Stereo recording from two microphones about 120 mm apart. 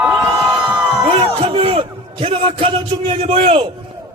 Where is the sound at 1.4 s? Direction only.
50° right (ahead or behind).